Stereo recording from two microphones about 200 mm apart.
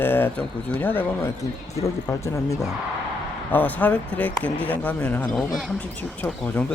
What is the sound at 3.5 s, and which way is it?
Speech, 10° left (ahead or behind).